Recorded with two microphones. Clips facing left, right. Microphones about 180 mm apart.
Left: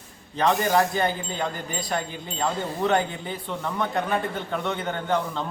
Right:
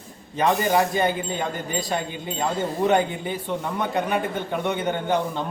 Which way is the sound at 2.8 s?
15° right (ahead or behind).